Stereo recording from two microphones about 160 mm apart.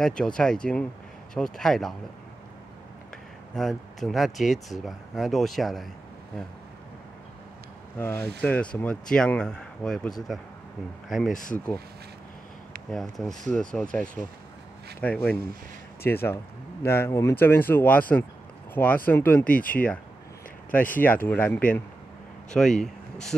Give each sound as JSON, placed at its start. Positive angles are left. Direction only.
{"t": 0.0, "sound": "speech", "side_deg": 5}
{"t": 3.5, "sound": "speech", "side_deg": 0}
{"t": 8.0, "sound": "speech", "side_deg": 15}
{"t": 11.3, "sound": "speech", "side_deg": 55}
{"t": 13.5, "sound": "speech", "side_deg": 5}
{"t": 19.4, "sound": "speech", "side_deg": 60}
{"t": 19.7, "sound": "speech", "side_deg": 10}
{"t": 21.0, "sound": "speech", "side_deg": 10}